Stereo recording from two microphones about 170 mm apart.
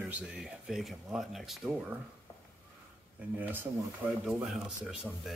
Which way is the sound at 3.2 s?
10° right (ahead or behind).